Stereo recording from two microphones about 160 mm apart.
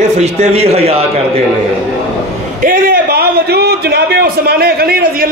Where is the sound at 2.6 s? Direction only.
60° right (ahead or behind).